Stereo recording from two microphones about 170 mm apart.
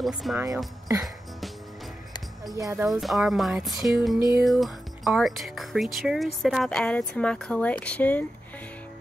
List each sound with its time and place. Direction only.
0.0 s speech: centre (ahead or behind)
2.5 s speech: 20° right (ahead or behind)
2.8 s speech: centre (ahead or behind)